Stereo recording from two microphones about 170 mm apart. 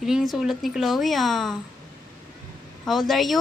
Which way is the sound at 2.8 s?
Centre (ahead or behind).